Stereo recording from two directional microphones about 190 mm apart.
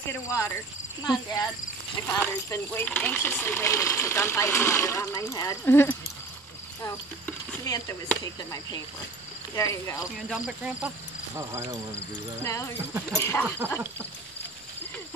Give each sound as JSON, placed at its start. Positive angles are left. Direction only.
{"t": 0.1, "sound": "speech", "side_deg": 15}
{"t": 10.1, "sound": "speech", "side_deg": -5}
{"t": 11.3, "sound": "speech", "side_deg": -15}
{"t": 12.4, "sound": "speech", "side_deg": 15}